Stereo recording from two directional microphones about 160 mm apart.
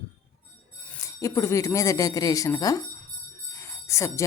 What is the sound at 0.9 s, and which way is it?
Speech, 20° left (ahead or behind).